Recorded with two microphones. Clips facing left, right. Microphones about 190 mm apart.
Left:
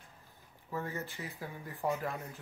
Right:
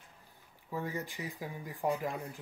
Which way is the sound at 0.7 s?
15° right (ahead or behind).